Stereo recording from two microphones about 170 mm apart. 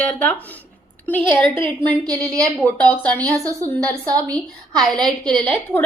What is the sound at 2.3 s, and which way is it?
Speech, 10° left (ahead or behind).